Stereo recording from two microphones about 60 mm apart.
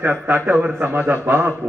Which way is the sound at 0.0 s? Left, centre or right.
Right.